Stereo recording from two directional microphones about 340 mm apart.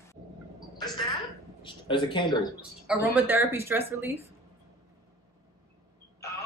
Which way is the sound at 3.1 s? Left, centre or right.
Centre.